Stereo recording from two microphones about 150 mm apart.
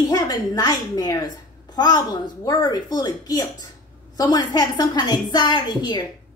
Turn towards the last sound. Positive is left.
turn(degrees=30)  # may be behind; listen again after turning